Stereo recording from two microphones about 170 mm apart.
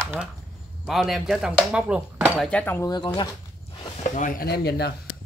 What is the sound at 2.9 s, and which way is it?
Speech, 25° left (ahead or behind).